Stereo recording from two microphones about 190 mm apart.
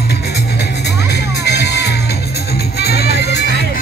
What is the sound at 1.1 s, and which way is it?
Music, 60° left (ahead or behind).